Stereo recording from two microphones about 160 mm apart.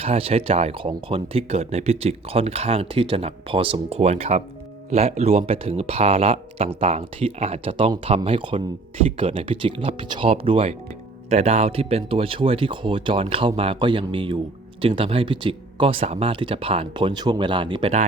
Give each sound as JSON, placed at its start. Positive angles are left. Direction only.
{"t": 0.0, "sound": "speech", "side_deg": -40}